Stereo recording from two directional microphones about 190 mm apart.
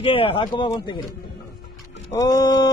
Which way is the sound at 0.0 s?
30° left (ahead or behind).